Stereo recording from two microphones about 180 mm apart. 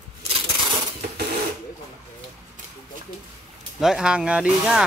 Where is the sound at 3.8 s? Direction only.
Centre (ahead or behind).